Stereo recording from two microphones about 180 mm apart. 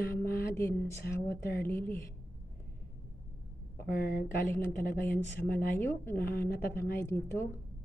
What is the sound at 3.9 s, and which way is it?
Speech, 60° left (ahead or behind).